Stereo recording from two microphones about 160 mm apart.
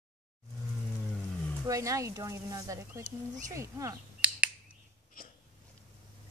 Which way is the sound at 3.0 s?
55° right (ahead or behind).